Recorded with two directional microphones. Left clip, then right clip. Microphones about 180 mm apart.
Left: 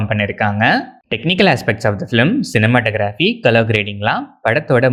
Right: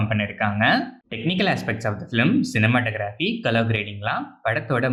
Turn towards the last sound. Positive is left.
turn(degrees=40)  # may be behind; listen again after turning